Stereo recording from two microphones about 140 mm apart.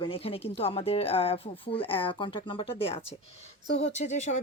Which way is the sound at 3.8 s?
55° left (ahead or behind).